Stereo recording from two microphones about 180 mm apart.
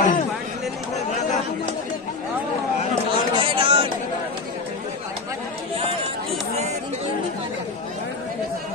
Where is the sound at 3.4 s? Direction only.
30° right (ahead or behind).